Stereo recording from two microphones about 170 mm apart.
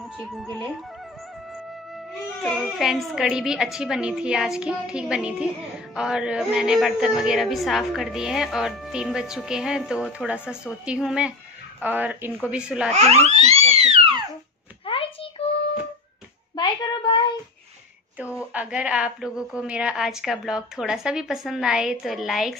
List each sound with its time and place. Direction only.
0.2 s a woman's voice: centre (ahead or behind)
2.4 s a woman's voice: centre (ahead or behind)
12.9 s a sound: 40° right (ahead or behind)
14.9 s a sound: 30° left (ahead or behind)
15.4 s child singing: 30° left (ahead or behind)
16.5 s a child's voice: 25° left (ahead or behind)
18.4 s a woman's voice: 10° right (ahead or behind)